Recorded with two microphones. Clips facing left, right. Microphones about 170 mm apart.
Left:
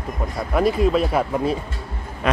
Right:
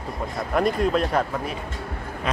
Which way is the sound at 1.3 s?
30° left (ahead or behind).